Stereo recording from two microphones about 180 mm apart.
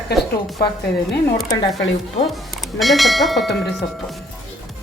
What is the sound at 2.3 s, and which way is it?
Speech, centre (ahead or behind).